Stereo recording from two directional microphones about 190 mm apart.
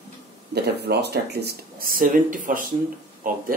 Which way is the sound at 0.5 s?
60° right (ahead or behind).